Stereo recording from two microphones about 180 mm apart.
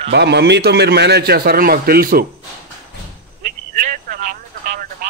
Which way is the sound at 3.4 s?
45° right (ahead or behind).